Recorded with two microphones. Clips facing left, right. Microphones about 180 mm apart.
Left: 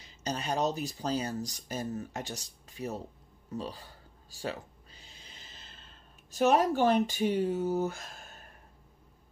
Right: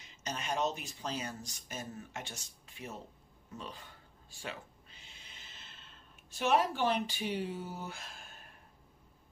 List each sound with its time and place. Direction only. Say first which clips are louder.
0.0 s speech: left 6 dB; 35° left (ahead or behind)
3.4 s a sound: left 8 dB; 35° left (ahead or behind)
6.3 s speech: left 5 dB; 40° left (ahead or behind)